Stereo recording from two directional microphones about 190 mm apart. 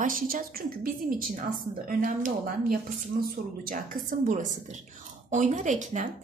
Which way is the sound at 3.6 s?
45° right (ahead or behind).